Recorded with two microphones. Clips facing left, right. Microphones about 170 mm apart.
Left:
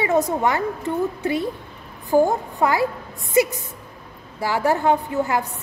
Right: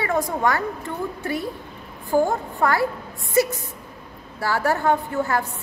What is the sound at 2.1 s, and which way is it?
A woman's voice, 20° left (ahead or behind).